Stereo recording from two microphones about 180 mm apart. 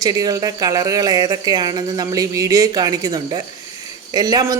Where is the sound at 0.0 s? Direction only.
20° right (ahead or behind).